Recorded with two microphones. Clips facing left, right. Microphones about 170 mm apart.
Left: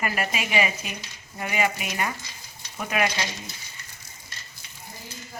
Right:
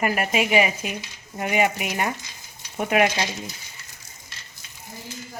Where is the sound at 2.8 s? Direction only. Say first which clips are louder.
Right 7 dB; 60° right (ahead or behind).